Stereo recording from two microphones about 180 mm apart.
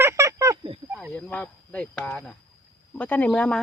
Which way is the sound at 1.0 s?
5° left (ahead or behind).